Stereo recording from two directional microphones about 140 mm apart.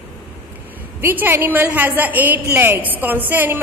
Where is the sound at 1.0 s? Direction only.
15° right (ahead or behind).